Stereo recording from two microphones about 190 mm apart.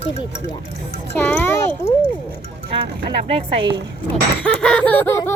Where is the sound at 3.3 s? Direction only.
30° right (ahead or behind).